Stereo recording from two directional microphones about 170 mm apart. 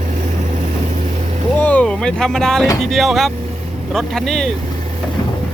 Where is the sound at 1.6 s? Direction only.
10° left (ahead or behind).